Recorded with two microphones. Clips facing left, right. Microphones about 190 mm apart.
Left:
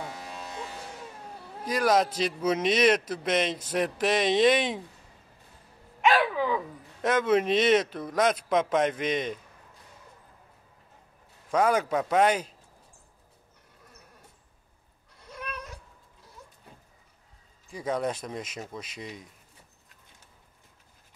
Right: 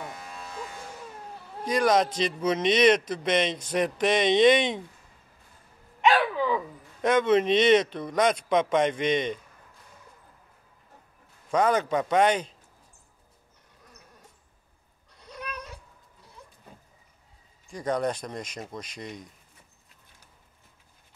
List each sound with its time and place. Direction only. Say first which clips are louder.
1.7 s a man's voice: right 1 dB; 5° left (ahead or behind)
7.0 s a man's voice: right 2 dB; 5° left (ahead or behind)
11.5 s a man's voice: right 1 dB; 5° left (ahead or behind)
17.6 s a man's voice: right 2 dB; 5° left (ahead or behind)